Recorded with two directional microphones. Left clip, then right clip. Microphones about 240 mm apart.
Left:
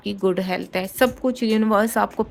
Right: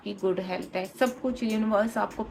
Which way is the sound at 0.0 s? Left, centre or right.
Left.